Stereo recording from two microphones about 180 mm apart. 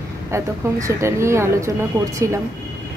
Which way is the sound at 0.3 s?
15° right (ahead or behind).